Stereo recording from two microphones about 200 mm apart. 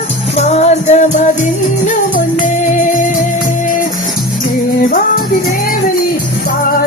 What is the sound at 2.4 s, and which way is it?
Music, 40° left (ahead or behind).